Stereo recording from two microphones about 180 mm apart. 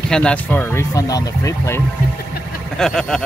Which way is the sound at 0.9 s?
20° left (ahead or behind).